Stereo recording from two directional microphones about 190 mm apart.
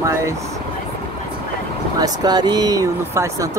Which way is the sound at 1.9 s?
20° right (ahead or behind).